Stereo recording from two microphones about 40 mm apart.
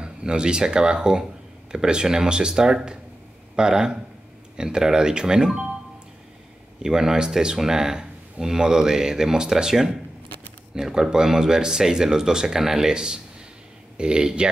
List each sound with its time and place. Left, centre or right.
0.0 s speech: right
6.8 s speech: centre